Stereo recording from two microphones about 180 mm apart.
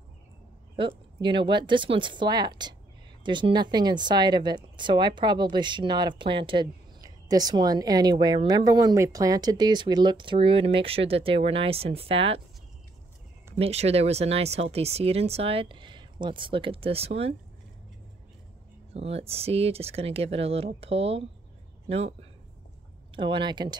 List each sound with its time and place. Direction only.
0.7 s speech: 30° right (ahead or behind)
13.6 s speech: 35° right (ahead or behind)
18.9 s speech: 35° right (ahead or behind)
23.1 s speech: 30° right (ahead or behind)